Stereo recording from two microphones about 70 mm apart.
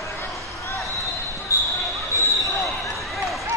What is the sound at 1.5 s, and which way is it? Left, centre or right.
Basketball bounce, left.